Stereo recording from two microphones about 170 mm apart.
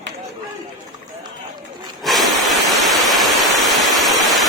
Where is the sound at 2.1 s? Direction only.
Centre (ahead or behind).